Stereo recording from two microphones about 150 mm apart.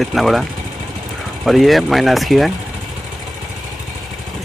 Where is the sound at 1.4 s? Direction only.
Centre (ahead or behind).